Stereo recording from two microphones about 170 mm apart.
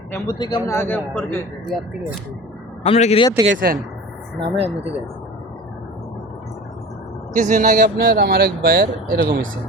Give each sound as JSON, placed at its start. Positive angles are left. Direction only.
{"t": 0.1, "sound": "speech", "side_deg": 25}
{"t": 2.8, "sound": "a man's voice", "side_deg": 40}
{"t": 3.4, "sound": "speech", "side_deg": -55}
{"t": 4.4, "sound": "speech", "side_deg": -35}
{"t": 7.3, "sound": "speech", "side_deg": -50}